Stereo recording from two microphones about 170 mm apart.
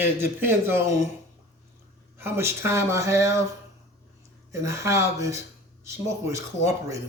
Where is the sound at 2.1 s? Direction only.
15° right (ahead or behind).